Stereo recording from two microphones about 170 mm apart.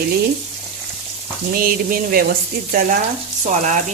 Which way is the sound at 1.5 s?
55° right (ahead or behind).